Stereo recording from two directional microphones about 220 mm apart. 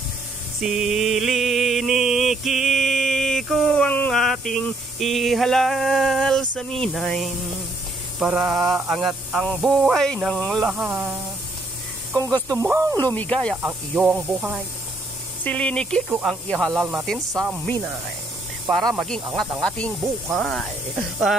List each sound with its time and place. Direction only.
0.6 s mantra: centre (ahead or behind)
8.2 s hiss: 5° right (ahead or behind)
12.1 s speech: 15° right (ahead or behind)
13.0 s speech: 10° left (ahead or behind)
13.6 s speech: 10° right (ahead or behind)
15.4 s hiss: 5° left (ahead or behind)
16.1 s hiss: 5° right (ahead or behind)
17.3 s speech: 15° right (ahead or behind)
18.7 s hiss: centre (ahead or behind)